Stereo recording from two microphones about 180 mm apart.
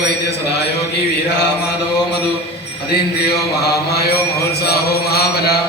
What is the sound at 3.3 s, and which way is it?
Mantra, 65° left (ahead or behind).